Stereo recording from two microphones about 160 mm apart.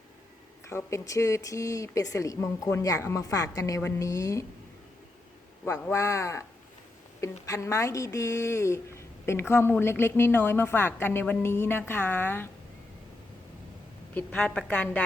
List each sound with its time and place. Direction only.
0.7 s speech: 15° left (ahead or behind)
5.6 s speech: 15° left (ahead or behind)
14.1 s speech: 10° left (ahead or behind)